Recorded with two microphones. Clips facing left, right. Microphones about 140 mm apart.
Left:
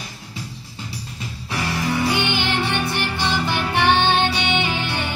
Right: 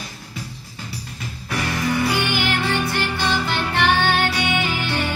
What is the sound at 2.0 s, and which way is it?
Music, 25° left (ahead or behind).